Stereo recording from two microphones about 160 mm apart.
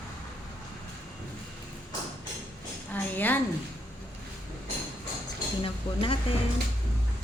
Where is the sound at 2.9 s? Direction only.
10° left (ahead or behind).